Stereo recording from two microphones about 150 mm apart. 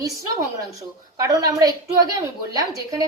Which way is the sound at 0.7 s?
20° right (ahead or behind).